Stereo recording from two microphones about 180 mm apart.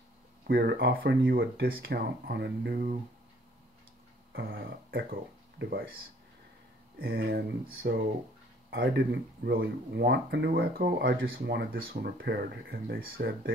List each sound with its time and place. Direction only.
0.5 s speech: 65° right (ahead or behind)
4.3 s a sound: 80° right
5.6 s speech: 75° right (ahead or behind)
7.0 s speech: 60° right (ahead or behind)